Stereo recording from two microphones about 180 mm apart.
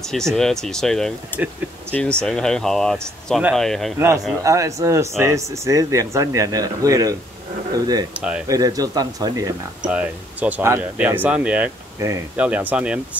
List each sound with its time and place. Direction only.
0.0 s speech: centre (ahead or behind)
4.4 s speech: 15° right (ahead or behind)
8.1 s speech: 5° right (ahead or behind)
8.5 s speech: 20° right (ahead or behind)
9.8 s speech: 5° right (ahead or behind)